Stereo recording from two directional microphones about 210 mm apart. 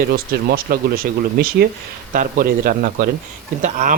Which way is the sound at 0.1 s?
45° right (ahead or behind).